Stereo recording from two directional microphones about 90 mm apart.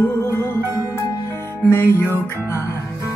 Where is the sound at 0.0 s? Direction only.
25° left (ahead or behind).